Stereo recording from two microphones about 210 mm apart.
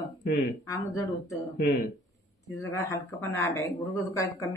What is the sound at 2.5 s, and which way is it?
Speech, 15° left (ahead or behind).